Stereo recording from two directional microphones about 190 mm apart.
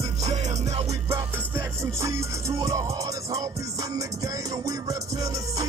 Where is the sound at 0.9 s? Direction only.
15° right (ahead or behind).